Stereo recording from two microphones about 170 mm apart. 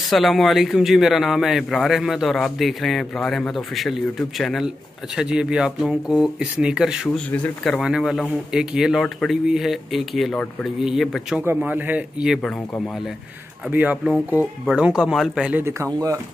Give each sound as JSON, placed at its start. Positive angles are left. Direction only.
{"t": 0.0, "sound": "speech", "side_deg": 0}
{"t": 13.7, "sound": "speech", "side_deg": -10}